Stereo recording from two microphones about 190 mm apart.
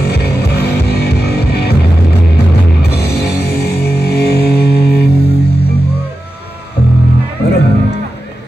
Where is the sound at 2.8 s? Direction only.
60° left (ahead or behind).